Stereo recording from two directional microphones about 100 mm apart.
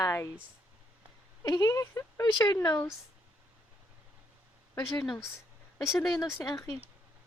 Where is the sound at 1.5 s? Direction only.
35° left (ahead or behind).